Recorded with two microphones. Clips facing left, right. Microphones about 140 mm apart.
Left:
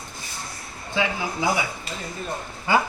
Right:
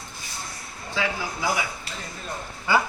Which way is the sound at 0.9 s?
20° left (ahead or behind).